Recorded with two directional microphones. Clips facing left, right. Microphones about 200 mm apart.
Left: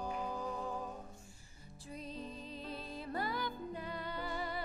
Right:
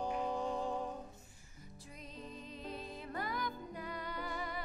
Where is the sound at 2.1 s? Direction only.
30° left (ahead or behind).